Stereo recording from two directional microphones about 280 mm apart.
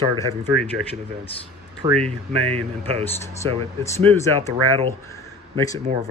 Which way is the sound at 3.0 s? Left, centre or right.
Centre.